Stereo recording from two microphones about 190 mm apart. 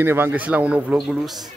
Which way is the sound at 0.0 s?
10° right (ahead or behind).